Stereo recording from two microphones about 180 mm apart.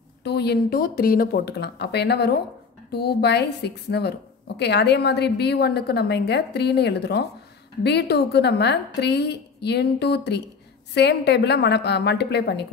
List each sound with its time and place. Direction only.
0.2 s a woman's voice: 65° left (ahead or behind)